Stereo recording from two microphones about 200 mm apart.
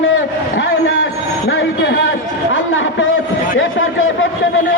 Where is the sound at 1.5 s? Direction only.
75° left (ahead or behind).